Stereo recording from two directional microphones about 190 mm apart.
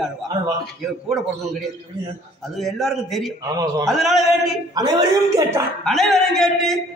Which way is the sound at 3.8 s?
Centre (ahead or behind).